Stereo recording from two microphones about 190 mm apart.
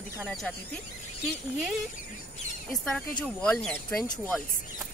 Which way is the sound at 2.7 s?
5° left (ahead or behind).